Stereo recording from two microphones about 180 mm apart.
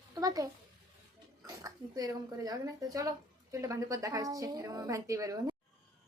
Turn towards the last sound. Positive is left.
turn(degrees=-20)  # may be behind; listen again after turning